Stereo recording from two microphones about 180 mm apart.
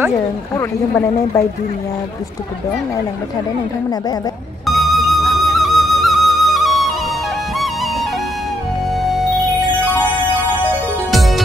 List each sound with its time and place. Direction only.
0.6 s speech: 15° left (ahead or behind)
4.6 s music: centre (ahead or behind)
9.0 s music: centre (ahead or behind)
11.1 s music: centre (ahead or behind)